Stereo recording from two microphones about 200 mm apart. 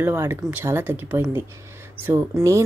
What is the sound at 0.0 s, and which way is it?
Speech, 10° right (ahead or behind).